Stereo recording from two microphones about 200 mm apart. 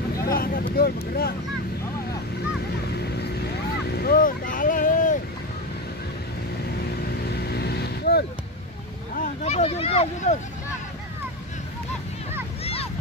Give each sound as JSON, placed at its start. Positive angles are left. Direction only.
{"t": 0.2, "sound": "speech", "side_deg": 50}
{"t": 3.9, "sound": "vehicle", "side_deg": 50}
{"t": 7.2, "sound": "vehicle", "side_deg": 55}
{"t": 9.1, "sound": "vehicle", "side_deg": 40}